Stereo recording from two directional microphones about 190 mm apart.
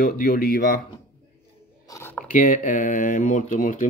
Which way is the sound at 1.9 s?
10° left (ahead or behind).